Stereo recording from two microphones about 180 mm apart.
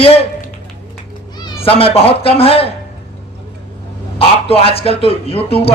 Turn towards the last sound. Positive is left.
turn(degrees=30)  # may be behind; listen again after turning